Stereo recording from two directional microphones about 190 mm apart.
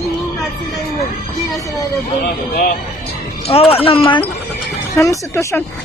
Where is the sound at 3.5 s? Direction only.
30° left (ahead or behind).